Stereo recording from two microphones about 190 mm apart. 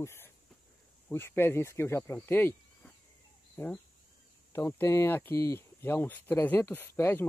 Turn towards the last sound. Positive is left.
turn(degrees=10)  # may be behind; listen again after turning